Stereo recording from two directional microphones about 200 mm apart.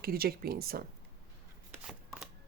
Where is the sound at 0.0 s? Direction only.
50° right (ahead or behind).